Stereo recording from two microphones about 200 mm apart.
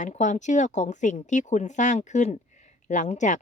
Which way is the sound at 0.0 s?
35° left (ahead or behind).